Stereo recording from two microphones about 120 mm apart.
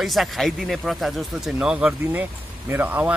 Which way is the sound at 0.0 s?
Centre (ahead or behind).